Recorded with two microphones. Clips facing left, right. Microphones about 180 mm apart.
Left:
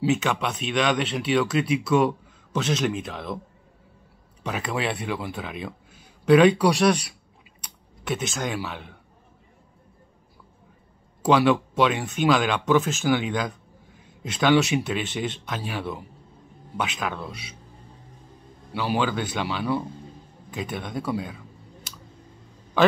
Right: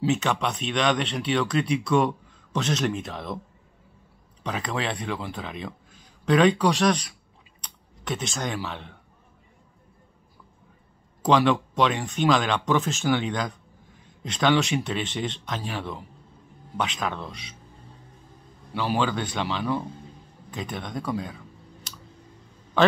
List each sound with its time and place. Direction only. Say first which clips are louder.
0.0 s speech: left 1 dB; centre (ahead or behind)
4.4 s speech: left 1 dB; 5° left (ahead or behind)
11.2 s speech: left 1 dB; 5° left (ahead or behind)
18.7 s speech: even; 10° left (ahead or behind)